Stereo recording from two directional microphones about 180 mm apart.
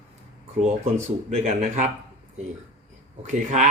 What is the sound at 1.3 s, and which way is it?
Speech, 40° right (ahead or behind).